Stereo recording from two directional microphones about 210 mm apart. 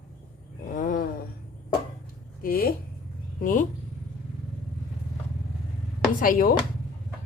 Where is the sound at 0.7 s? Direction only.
40° left (ahead or behind).